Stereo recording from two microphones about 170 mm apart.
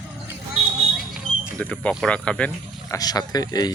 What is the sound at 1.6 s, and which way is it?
Speech, 10° left (ahead or behind).